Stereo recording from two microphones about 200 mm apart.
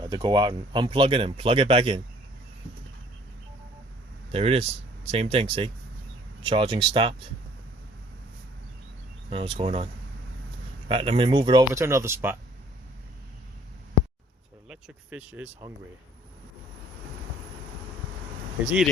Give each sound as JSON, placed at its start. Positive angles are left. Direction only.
{"t": 0.0, "sound": "speech", "side_deg": -20}
{"t": 4.3, "sound": "speech", "side_deg": -30}
{"t": 9.3, "sound": "speech", "side_deg": -30}
{"t": 14.7, "sound": "speech", "side_deg": -5}